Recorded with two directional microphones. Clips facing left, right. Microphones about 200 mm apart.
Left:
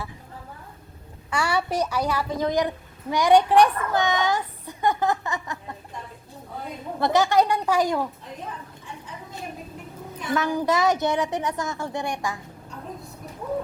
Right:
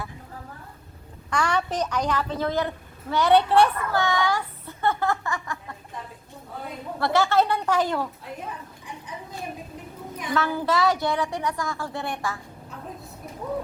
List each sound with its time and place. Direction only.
1.3 s a woman's voice: 10° left (ahead or behind)
7.0 s a woman's voice: 15° left (ahead or behind)
10.3 s a woman's voice: 15° left (ahead or behind)